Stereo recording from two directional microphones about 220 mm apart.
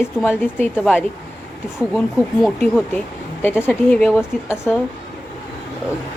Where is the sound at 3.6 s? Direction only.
5° left (ahead or behind).